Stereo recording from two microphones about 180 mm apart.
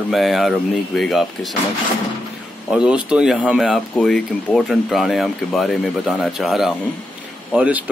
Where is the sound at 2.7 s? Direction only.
5° right (ahead or behind).